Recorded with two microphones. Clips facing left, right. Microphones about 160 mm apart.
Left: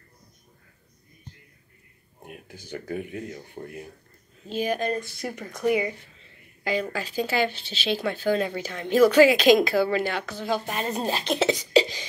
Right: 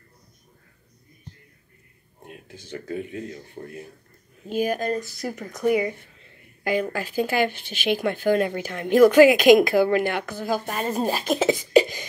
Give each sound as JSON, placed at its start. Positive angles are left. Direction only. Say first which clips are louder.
{"t": 2.6, "sound": "speech", "louder": "right 1 dB", "side_deg": 15}
{"t": 4.5, "sound": "speech", "louder": "right 3 dB", "side_deg": -10}
{"t": 5.2, "sound": "speech", "louder": "right 2 dB", "side_deg": 0}
{"t": 6.6, "sound": "speech", "louder": "right 3 dB", "side_deg": -15}
{"t": 7.0, "sound": "speech", "louder": "right 3 dB", "side_deg": -50}
{"t": 7.3, "sound": "speech", "louder": "right 2 dB", "side_deg": -15}
{"t": 11.7, "sound": "a sound", "louder": "right 4 dB", "side_deg": -50}